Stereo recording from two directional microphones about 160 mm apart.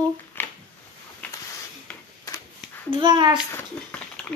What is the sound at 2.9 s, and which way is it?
Speech, 30° right (ahead or behind).